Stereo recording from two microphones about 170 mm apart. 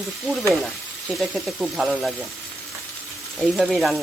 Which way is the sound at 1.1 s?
Centre (ahead or behind).